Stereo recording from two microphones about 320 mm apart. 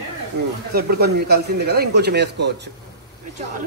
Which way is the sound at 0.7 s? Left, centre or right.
Right.